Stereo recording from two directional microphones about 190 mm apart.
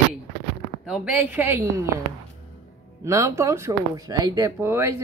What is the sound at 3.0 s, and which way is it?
Speech, 15° right (ahead or behind).